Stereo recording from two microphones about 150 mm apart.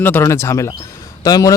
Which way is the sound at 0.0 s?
15° left (ahead or behind).